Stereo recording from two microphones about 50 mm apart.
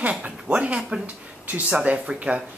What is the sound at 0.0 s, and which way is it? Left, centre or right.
Speech, right.